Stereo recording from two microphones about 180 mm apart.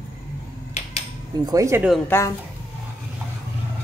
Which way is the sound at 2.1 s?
15° left (ahead or behind).